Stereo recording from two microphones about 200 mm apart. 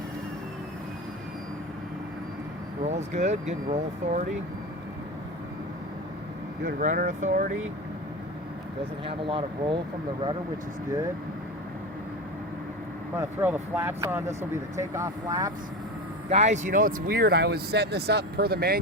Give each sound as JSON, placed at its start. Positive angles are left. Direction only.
{"t": 2.8, "sound": "speech", "side_deg": -35}
{"t": 6.7, "sound": "speech", "side_deg": -45}
{"t": 9.0, "sound": "speech", "side_deg": -25}
{"t": 13.1, "sound": "speech", "side_deg": -10}
{"t": 16.3, "sound": "speech", "side_deg": -35}